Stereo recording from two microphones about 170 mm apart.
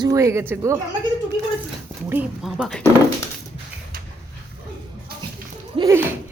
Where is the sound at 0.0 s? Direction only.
20° right (ahead or behind).